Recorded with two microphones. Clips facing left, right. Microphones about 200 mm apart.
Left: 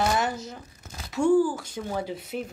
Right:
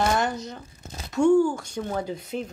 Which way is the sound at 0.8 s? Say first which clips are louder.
Right 5 dB; 25° right (ahead or behind).